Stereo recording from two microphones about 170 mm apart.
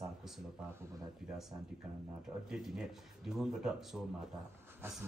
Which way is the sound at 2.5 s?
5° right (ahead or behind).